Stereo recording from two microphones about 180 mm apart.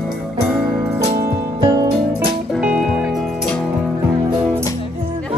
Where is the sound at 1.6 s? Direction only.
15° right (ahead or behind).